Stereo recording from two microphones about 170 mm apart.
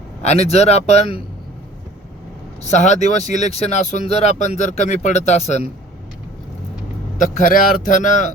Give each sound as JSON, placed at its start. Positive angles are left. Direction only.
{"t": 0.2, "sound": "speech", "side_deg": 40}
{"t": 2.6, "sound": "speech", "side_deg": 45}
{"t": 7.2, "sound": "speech", "side_deg": 55}